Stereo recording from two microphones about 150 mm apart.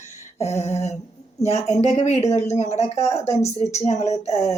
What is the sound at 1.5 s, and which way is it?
Speech, 50° left (ahead or behind).